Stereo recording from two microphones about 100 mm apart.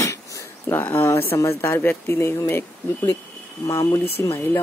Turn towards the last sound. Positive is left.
turn(degrees=30)  # may be behind; listen again after turning